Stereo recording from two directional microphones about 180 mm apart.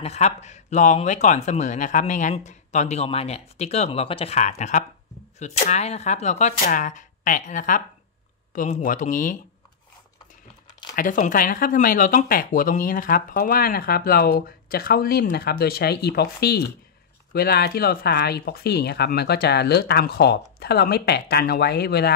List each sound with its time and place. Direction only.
0.0 s speech: 40° left (ahead or behind)
11.0 s speech: 45° left (ahead or behind)